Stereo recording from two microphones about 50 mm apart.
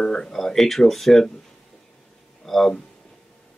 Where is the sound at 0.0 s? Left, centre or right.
Centre.